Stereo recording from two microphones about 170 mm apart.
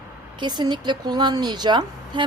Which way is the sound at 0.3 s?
25° right (ahead or behind).